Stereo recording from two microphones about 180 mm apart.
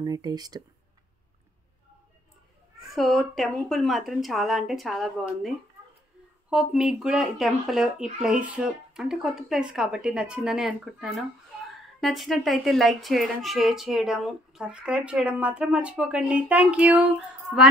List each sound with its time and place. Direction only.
0.0 s speech: 20° right (ahead or behind)
2.8 s speech: centre (ahead or behind)
6.5 s speech: 5° right (ahead or behind)